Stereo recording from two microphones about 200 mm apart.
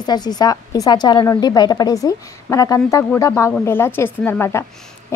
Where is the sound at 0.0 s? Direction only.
20° left (ahead or behind).